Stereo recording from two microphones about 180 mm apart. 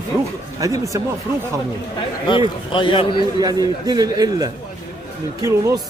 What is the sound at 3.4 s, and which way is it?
Speech, 20° right (ahead or behind).